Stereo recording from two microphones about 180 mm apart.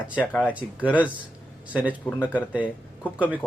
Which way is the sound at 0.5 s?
10° right (ahead or behind).